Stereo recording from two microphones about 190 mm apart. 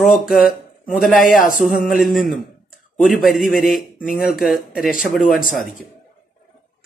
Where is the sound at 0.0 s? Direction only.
Centre (ahead or behind).